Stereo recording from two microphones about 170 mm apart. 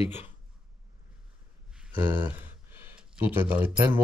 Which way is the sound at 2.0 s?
10° right (ahead or behind).